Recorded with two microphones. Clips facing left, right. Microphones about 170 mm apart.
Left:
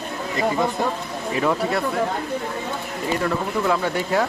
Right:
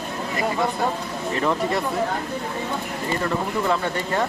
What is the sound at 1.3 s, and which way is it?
Speech, 5° left (ahead or behind).